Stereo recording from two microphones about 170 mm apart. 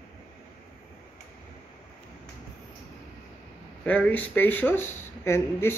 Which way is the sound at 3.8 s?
10° left (ahead or behind).